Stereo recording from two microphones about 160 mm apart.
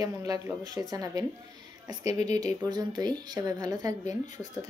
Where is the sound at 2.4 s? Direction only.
25° right (ahead or behind).